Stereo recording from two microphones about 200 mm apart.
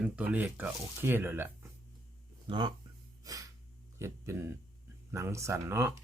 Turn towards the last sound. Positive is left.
turn(degrees=-10)  # may be behind; listen again after turning